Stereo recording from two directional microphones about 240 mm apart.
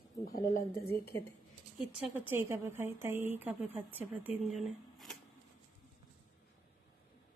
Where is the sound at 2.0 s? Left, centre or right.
Centre.